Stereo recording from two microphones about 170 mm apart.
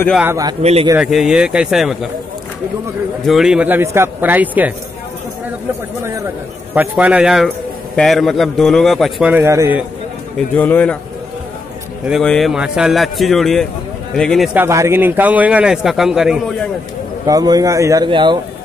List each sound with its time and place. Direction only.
0.2 s a man's voice: 15° right (ahead or behind)
0.6 s a man's voice: 40° right (ahead or behind)
0.9 s a man's voice: 5° right (ahead or behind)
3.3 s a man's voice: 5° right (ahead or behind)
6.0 s a man's voice: 15° right (ahead or behind); by 9.3 s centre (ahead or behind)
9.3 s a man's voice: 15° right (ahead or behind)
10.5 s a man's voice: 10° left (ahead or behind)
12.1 s a man's voice: centre (ahead or behind)
14.5 s a man's voice: 15° right (ahead or behind)
17.3 s speech: 20° right (ahead or behind)